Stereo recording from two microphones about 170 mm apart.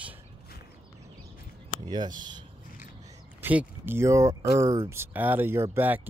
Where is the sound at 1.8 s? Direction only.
25° right (ahead or behind).